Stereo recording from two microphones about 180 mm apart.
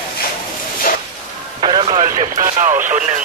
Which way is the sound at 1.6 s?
25° right (ahead or behind).